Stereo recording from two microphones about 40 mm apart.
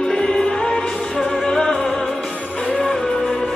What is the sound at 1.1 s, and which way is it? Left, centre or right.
Music, centre.